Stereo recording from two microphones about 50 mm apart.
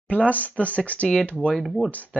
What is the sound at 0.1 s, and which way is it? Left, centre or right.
Speech, left.